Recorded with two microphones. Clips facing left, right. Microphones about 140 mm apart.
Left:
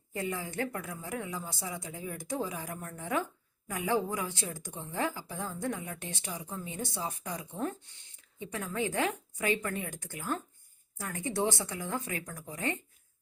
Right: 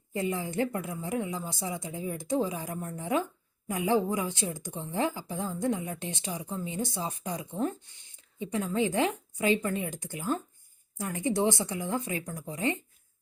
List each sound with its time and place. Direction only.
0.1 s a woman's voice: 20° right (ahead or behind)